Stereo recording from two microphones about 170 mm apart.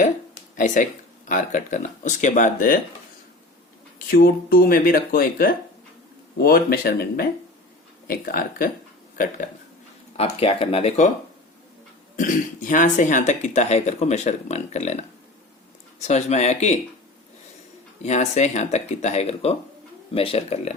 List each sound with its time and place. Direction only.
0.5 s speech: 50° left (ahead or behind)
3.9 s speech: 60° left (ahead or behind)
10.2 s speech: 35° left (ahead or behind)
12.1 s speech: 50° left (ahead or behind)
16.0 s speech: 40° left (ahead or behind)
18.0 s speech: 40° left (ahead or behind)